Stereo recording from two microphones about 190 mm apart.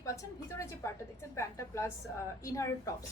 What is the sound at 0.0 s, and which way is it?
A woman's voice, 15° left (ahead or behind).